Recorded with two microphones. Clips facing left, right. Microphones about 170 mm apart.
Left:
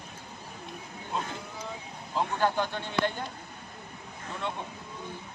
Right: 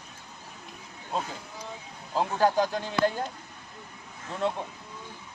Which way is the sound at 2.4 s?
40° right (ahead or behind).